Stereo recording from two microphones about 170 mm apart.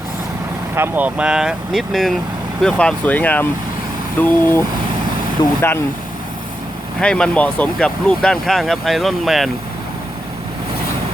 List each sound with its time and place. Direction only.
0.8 s speech: 10° right (ahead or behind); by 4.6 s 10° left (ahead or behind)
5.4 s speech: 25° left (ahead or behind)
7.0 s speech: 5° left (ahead or behind)